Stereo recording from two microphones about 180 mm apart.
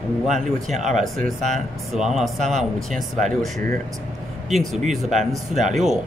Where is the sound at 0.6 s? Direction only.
40° right (ahead or behind).